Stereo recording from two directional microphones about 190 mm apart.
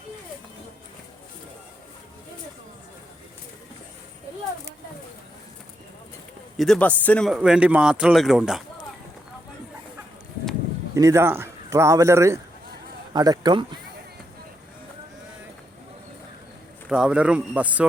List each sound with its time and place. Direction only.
6.6 s speech: 5° left (ahead or behind)
10.9 s speech: 15° right (ahead or behind)
16.9 s speech: 5° right (ahead or behind)